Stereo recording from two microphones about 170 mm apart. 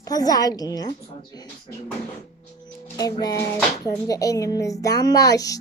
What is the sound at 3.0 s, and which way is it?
Music, 20° left (ahead or behind).